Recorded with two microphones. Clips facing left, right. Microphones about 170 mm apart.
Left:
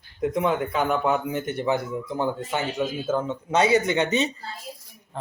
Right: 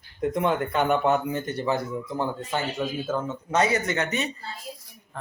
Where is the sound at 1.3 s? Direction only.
20° left (ahead or behind).